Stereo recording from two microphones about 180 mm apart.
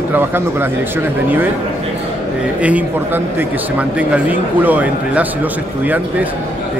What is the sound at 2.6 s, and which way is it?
A man's voice, 10° right (ahead or behind).